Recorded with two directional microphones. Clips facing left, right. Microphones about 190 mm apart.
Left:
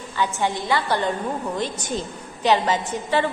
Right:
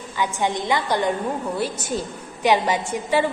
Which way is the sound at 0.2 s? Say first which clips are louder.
Even; 20° right (ahead or behind).